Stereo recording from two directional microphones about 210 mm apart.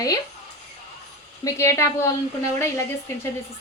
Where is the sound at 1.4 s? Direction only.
15° left (ahead or behind).